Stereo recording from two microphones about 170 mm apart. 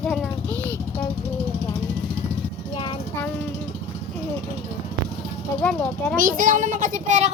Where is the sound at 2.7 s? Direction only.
30° left (ahead or behind).